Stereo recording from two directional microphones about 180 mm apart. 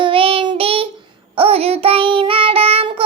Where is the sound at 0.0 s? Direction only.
30° right (ahead or behind).